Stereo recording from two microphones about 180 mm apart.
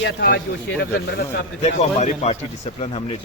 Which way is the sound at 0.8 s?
65° left (ahead or behind).